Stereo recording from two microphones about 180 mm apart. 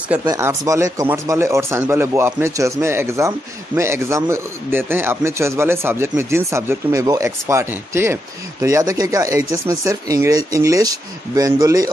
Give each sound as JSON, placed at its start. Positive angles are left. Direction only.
{"t": 0.2, "sound": "speech", "side_deg": -20}